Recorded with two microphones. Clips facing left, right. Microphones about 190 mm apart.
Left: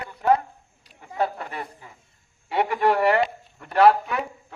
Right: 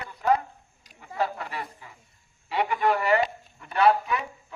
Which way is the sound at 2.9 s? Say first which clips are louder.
Left 3 dB; 70° left (ahead or behind).